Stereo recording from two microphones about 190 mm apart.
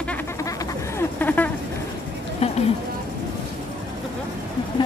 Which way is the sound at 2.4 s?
35° left (ahead or behind).